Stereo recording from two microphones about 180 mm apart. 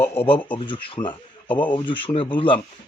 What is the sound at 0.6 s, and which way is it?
A man's voice, 30° left (ahead or behind).